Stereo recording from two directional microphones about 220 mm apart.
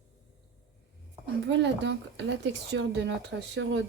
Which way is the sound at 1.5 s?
55° right (ahead or behind).